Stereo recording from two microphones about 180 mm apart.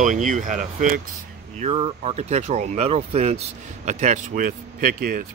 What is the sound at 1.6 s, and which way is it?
Speech, 35° right (ahead or behind).